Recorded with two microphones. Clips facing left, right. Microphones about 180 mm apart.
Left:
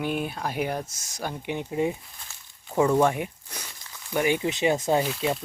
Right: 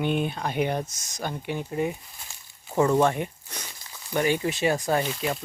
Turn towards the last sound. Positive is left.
turn(degrees=5)  # may be behind; listen again after turning